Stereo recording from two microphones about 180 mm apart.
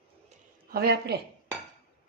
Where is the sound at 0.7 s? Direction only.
60° right (ahead or behind).